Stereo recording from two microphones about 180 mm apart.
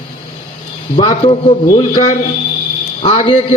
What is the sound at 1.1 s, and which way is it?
A man's voice, 35° left (ahead or behind).